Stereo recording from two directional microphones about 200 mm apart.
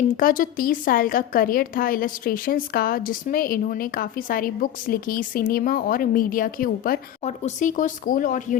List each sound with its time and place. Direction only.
0.1 s a woman's voice: 45° left (ahead or behind)